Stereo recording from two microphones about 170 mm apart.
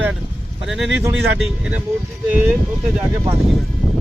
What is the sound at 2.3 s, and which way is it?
Speech, 10° right (ahead or behind).